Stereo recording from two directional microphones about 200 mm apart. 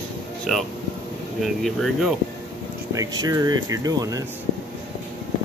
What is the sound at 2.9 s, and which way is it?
Speech, 15° right (ahead or behind).